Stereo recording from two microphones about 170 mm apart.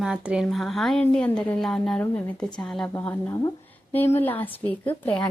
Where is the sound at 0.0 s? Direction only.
5° right (ahead or behind).